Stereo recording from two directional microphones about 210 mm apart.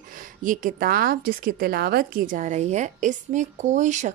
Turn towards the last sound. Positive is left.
turn(degrees=-35)  # may be behind; listen again after turning